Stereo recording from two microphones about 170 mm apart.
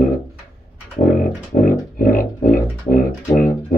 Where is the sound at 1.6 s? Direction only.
55° left (ahead or behind).